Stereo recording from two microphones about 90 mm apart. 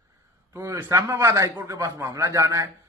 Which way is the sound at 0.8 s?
35° right (ahead or behind).